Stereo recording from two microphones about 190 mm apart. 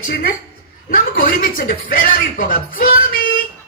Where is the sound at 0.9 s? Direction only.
50° left (ahead or behind).